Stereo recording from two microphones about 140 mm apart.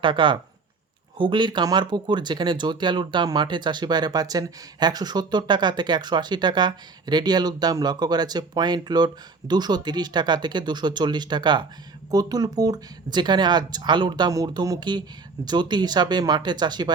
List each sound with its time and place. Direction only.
0.0 s speech: 35° right (ahead or behind)